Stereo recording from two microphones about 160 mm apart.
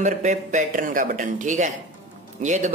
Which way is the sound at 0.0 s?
50° right (ahead or behind).